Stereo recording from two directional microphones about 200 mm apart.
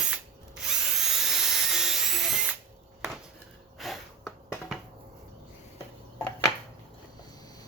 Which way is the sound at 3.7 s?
Centre (ahead or behind).